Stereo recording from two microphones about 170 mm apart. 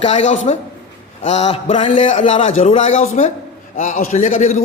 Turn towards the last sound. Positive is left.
turn(degrees=45)  # may be behind; listen again after turning